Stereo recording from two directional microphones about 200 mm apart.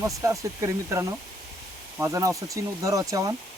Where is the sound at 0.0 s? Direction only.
15° right (ahead or behind).